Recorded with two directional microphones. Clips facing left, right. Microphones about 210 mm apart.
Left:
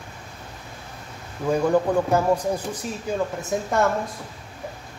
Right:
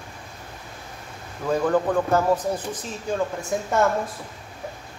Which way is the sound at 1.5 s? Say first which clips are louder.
Left 1 dB; 10° left (ahead or behind).